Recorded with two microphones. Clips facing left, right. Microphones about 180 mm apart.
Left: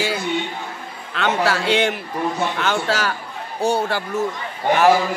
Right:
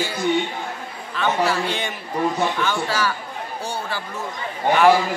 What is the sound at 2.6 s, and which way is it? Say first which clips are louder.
A man's voice: left 2 dB; 70° left (ahead or behind).